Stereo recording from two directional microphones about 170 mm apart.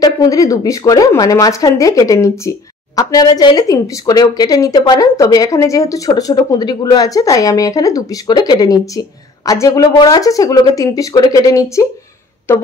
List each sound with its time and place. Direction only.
0.0 s speech: 20° left (ahead or behind)